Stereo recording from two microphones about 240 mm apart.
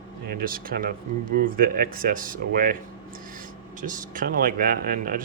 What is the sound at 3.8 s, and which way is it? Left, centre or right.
Speech, right.